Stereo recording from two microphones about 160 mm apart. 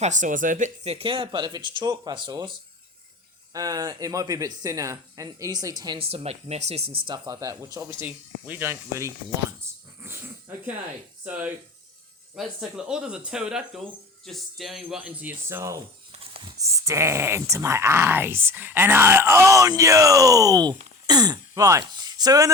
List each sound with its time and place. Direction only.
0.0 s speech: 50° right (ahead or behind)
0.9 s speech: 35° right (ahead or behind)
7.1 s speech: 20° right (ahead or behind)
11.3 s speech: 10° right (ahead or behind)
16.2 s a sound: 35° right (ahead or behind)
16.6 s speech: 20° right (ahead or behind)